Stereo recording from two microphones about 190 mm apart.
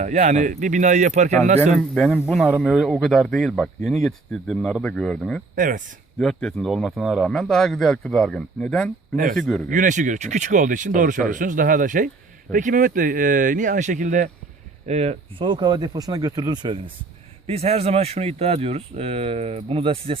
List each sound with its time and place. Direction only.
0.0 s speech: 40° right (ahead or behind)
1.7 s speech: 5° left (ahead or behind)
5.5 s speech: 45° right (ahead or behind)
6.1 s speech: 5° left (ahead or behind)
9.6 s speech: 45° right (ahead or behind); by 20.1 s 30° right (ahead or behind)